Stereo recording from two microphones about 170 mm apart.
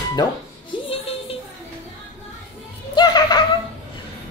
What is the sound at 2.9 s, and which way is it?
Music, 25° left (ahead or behind).